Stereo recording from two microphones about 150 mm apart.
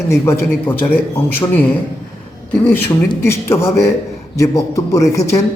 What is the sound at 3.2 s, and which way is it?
A man's voice, 15° left (ahead or behind).